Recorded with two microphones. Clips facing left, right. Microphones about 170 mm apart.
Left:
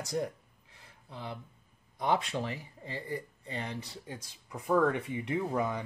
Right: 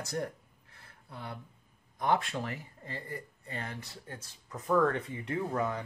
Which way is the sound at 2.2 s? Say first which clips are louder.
Left 2 dB; 15° left (ahead or behind).